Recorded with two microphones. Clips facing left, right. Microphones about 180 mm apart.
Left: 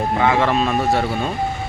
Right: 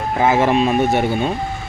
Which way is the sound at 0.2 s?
30° right (ahead or behind).